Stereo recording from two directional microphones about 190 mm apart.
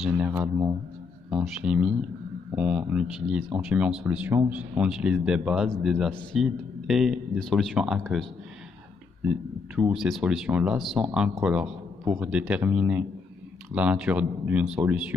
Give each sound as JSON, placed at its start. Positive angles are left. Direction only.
{"t": 0.3, "sound": "a man's voice", "side_deg": -15}